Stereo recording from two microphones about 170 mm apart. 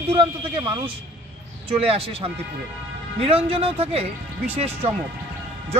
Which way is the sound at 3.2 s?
35° right (ahead or behind).